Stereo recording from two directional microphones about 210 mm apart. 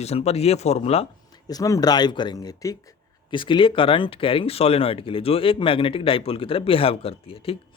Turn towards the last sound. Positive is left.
turn(degrees=25)  # may be behind; listen again after turning